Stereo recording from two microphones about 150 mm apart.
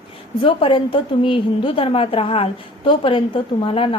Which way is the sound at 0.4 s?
35° left (ahead or behind).